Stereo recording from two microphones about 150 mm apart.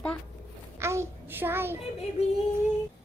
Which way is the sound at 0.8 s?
20° right (ahead or behind).